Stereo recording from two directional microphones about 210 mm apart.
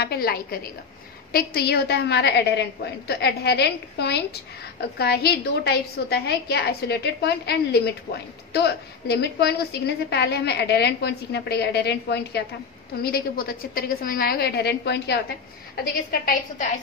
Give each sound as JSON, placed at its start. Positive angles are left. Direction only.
{"t": 0.0, "sound": "a woman's voice", "side_deg": 50}